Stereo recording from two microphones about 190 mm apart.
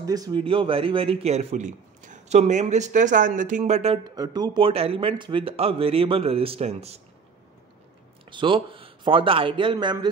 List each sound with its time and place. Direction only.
0.0 s speech: 20° right (ahead or behind)
8.3 s a man's voice: 25° right (ahead or behind)